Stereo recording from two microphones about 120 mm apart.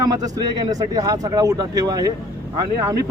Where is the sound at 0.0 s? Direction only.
30° right (ahead or behind).